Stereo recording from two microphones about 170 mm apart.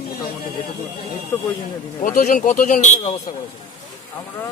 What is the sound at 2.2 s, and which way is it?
Speech, 50° left (ahead or behind).